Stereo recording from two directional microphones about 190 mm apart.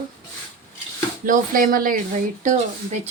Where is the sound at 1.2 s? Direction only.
45° right (ahead or behind).